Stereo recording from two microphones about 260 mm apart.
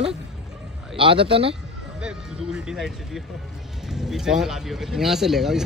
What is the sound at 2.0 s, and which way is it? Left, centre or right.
Speech, centre.